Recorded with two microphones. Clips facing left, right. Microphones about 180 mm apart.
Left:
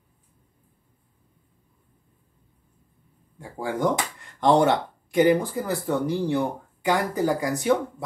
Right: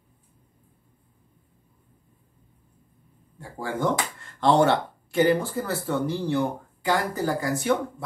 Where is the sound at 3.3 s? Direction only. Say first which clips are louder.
Left 2 dB; 15° left (ahead or behind).